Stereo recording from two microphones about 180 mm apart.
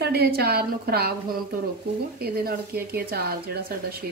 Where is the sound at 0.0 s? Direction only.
60° right (ahead or behind).